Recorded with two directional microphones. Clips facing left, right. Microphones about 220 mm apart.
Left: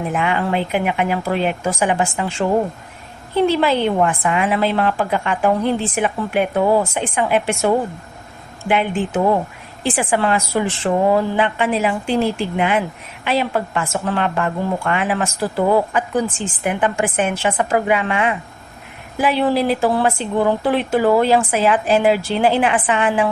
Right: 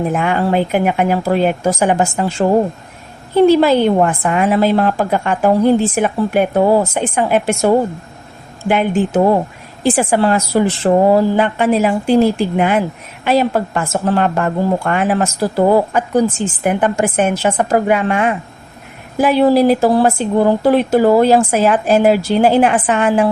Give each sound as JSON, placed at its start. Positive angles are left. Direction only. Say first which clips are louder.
{"t": 0.1, "sound": "a woman's voice", "louder": "right 4 dB", "side_deg": -45}